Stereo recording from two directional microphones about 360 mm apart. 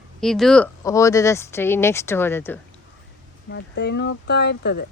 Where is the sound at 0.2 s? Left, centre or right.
Centre.